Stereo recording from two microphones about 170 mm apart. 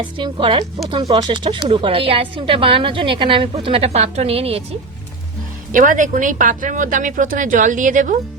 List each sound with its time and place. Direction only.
0.0 s speech: 30° right (ahead or behind)
5.7 s speech: 50° right (ahead or behind)